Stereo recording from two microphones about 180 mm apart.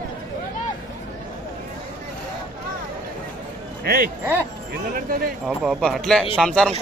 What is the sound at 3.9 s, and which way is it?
Speech, 55° right (ahead or behind).